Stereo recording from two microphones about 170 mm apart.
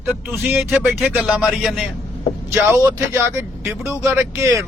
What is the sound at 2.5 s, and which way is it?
Speech, 15° right (ahead or behind).